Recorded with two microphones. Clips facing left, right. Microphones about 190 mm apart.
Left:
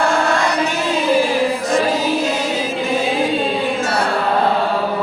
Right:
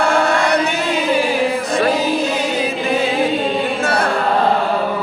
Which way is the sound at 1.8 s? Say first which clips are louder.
Right 1 dB; 65° right (ahead or behind).